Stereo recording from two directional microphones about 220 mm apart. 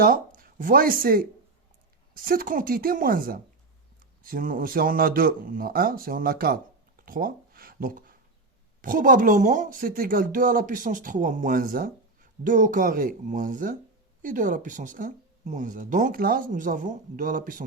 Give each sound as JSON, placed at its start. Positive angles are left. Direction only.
{"t": 0.0, "sound": "speech", "side_deg": -40}
{"t": 7.0, "sound": "a sound", "side_deg": -40}
{"t": 8.8, "sound": "speech", "side_deg": -40}